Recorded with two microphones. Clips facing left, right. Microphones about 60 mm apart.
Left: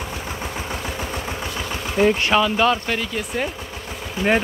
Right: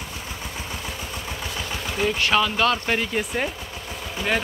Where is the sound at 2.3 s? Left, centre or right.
Centre.